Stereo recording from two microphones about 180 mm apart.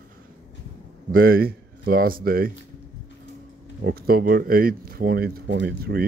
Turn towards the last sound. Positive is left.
turn(degrees=-60)  # may be behind; listen again after turning